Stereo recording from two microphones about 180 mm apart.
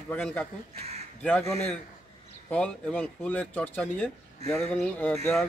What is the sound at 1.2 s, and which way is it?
Speech, 5° left (ahead or behind).